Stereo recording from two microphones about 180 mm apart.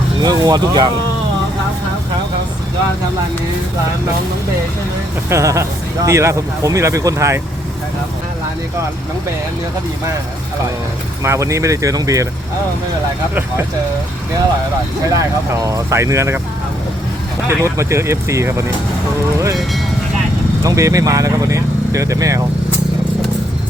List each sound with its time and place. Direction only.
0.2 s speech: 20° right (ahead or behind)
5.3 s speech: 15° right (ahead or behind)
11.2 s speech: 15° right (ahead or behind)
15.1 s speech: 20° right (ahead or behind)
17.6 s speech: 15° right (ahead or behind)
20.7 s speech: 20° right (ahead or behind)